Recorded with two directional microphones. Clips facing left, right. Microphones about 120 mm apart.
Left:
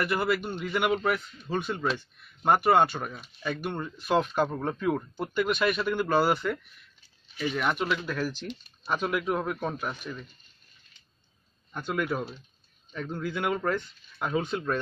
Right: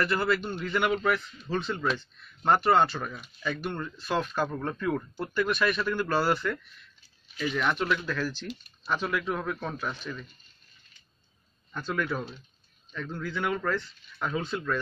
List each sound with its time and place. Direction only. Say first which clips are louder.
0.0 s speech: even; 10° left (ahead or behind)
8.6 s speech: left 1 dB; 25° left (ahead or behind)
11.7 s speech: left 1 dB; 15° left (ahead or behind)